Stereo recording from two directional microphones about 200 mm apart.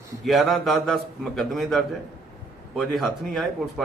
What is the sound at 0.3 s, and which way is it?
A man's voice, centre (ahead or behind).